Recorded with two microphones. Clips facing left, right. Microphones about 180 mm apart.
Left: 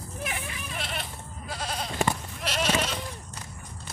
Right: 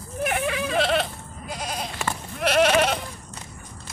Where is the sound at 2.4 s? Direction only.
60° right (ahead or behind).